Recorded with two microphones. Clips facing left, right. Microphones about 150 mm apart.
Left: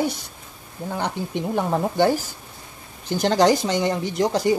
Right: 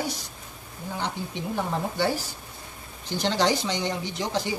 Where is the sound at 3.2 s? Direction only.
50° left (ahead or behind).